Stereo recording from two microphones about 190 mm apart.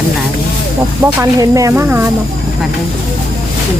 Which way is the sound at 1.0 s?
15° right (ahead or behind).